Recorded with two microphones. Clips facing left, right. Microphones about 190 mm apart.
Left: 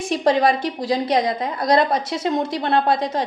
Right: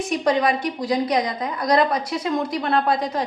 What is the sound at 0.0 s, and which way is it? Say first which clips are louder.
A woman's voice: left 2 dB; 30° left (ahead or behind).